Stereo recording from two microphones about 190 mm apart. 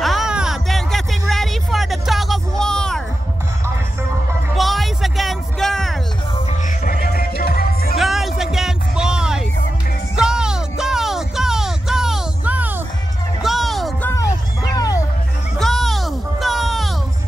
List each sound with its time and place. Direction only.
0.0 s music: centre (ahead or behind)
4.6 s music: centre (ahead or behind)
6.8 s music: 50° left (ahead or behind)
8.0 s music: centre (ahead or behind)
14.0 s a sound: 15° left (ahead or behind)
15.6 s music: centre (ahead or behind)